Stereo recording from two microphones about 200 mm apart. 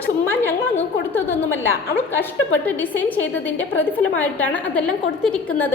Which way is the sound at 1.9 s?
10° left (ahead or behind).